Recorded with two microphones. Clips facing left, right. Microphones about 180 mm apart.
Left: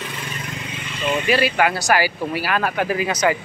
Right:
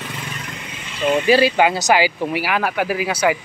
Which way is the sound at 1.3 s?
25° right (ahead or behind).